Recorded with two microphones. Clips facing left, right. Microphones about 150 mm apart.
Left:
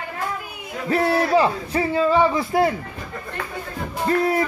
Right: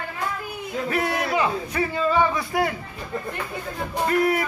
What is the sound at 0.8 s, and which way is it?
Speech, 30° left (ahead or behind).